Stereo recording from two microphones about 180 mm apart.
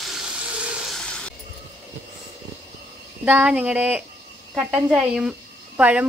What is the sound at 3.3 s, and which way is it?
Speech, 5° right (ahead or behind).